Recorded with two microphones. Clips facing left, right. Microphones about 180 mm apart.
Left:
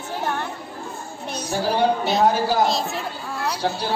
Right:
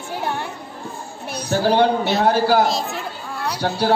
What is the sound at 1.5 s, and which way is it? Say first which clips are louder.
A man's voice: right 4 dB; 70° right (ahead or behind).